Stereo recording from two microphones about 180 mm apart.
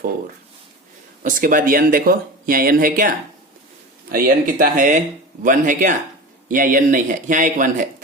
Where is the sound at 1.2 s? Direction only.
50° right (ahead or behind).